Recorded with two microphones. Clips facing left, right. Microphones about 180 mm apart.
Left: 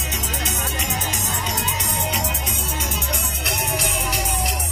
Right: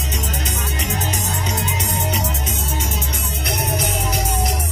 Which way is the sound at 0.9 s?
40° right (ahead or behind).